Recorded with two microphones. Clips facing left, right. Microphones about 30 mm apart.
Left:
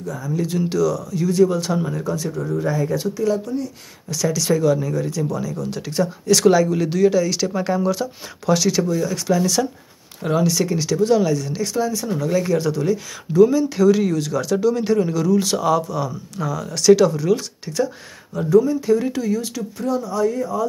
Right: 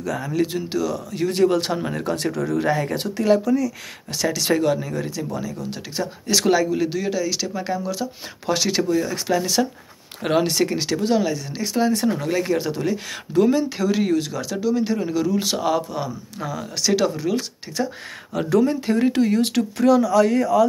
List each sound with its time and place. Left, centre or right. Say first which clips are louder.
0.5 s speech: left 4 dB; right
1.1 s speech: right 1 dB; right
2.3 s speech: right 1 dB; right
2.6 s speech: left 1 dB; right; by 8.0 s centre
8.5 s speech: left 2 dB; right
10.2 s speech: even; right
11.1 s speech: left 3 dB; centre
11.7 s speech: right 4 dB; right
12.3 s speech: left 2 dB; right
13.3 s speech: left 4 dB; right; by 14.4 s centre
14.4 s speech: left 3 dB; centre
15.1 s speech: left 3 dB; centre
18.6 s speech: even; right
19.8 s speech: right 5 dB; right